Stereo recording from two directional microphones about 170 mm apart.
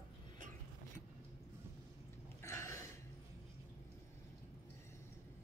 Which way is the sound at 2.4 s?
15° left (ahead or behind).